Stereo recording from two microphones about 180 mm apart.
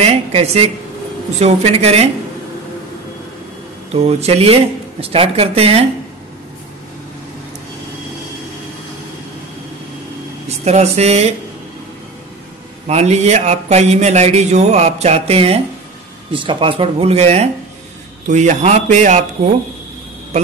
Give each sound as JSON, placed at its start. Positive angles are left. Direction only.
{"t": 0.0, "sound": "a woman's voice", "side_deg": -35}
{"t": 3.9, "sound": "a man's voice", "side_deg": -35}
{"t": 10.6, "sound": "a man's voice", "side_deg": -35}
{"t": 12.8, "sound": "a man's voice", "side_deg": -35}